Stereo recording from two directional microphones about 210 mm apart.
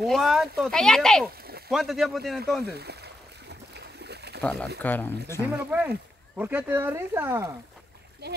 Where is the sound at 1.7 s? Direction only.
Centre (ahead or behind).